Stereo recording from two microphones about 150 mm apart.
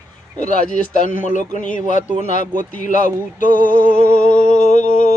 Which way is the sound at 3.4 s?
65° right (ahead or behind).